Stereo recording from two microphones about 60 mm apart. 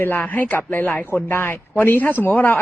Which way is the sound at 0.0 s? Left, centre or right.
Left.